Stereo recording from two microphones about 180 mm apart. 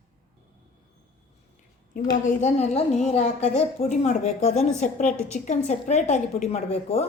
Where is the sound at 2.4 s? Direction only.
35° left (ahead or behind).